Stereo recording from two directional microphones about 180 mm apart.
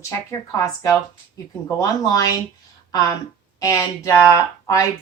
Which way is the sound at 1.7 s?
20° left (ahead or behind).